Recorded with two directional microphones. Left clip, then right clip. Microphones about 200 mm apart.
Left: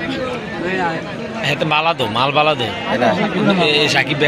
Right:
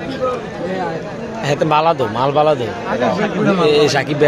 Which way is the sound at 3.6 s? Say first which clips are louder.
Right 2 dB; 30° right (ahead or behind).